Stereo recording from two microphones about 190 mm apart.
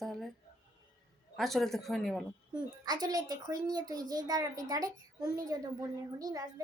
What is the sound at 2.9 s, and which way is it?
A woman's voice, 20° right (ahead or behind).